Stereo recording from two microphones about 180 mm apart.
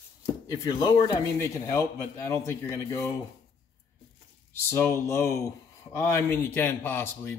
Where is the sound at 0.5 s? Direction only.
20° left (ahead or behind).